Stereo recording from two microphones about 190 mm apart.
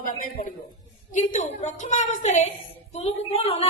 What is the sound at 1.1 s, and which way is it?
A woman's voice, 40° left (ahead or behind).